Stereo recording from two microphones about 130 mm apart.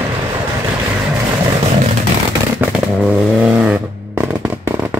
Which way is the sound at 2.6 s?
15° right (ahead or behind).